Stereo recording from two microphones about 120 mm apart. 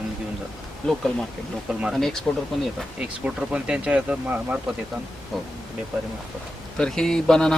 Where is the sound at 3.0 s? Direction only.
10° right (ahead or behind).